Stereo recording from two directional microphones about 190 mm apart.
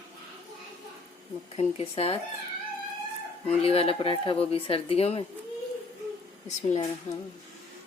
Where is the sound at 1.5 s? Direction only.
30° left (ahead or behind).